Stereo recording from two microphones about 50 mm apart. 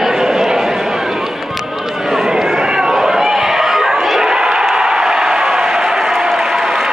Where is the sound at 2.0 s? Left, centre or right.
Centre.